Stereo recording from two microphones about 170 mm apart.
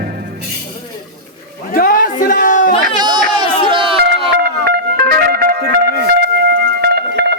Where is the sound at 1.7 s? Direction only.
55° left (ahead or behind).